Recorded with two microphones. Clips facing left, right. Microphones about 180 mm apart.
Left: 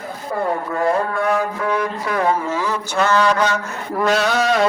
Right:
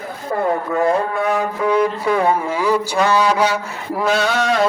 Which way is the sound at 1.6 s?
20° right (ahead or behind).